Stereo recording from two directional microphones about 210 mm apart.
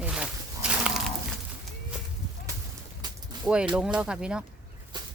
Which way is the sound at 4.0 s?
5° right (ahead or behind).